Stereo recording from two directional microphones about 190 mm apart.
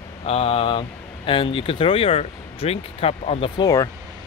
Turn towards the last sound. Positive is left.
turn(degrees=20)  # may be behind; listen again after turning